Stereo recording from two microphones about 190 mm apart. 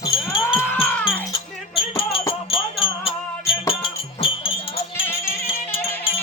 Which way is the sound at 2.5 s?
30° left (ahead or behind).